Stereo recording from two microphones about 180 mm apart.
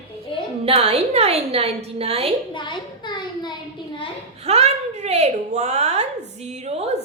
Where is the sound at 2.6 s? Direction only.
25° left (ahead or behind).